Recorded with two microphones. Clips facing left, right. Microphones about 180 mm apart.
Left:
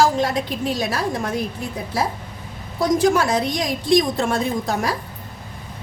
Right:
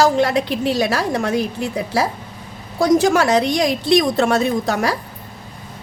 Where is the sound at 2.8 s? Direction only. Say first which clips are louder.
Right 3 dB; 80° right.